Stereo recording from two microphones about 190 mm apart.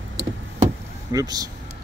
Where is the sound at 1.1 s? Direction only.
20° right (ahead or behind).